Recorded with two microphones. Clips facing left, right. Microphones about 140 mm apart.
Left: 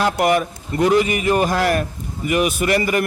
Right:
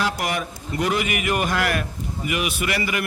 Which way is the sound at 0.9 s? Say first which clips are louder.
Left 7 dB; 35° left (ahead or behind).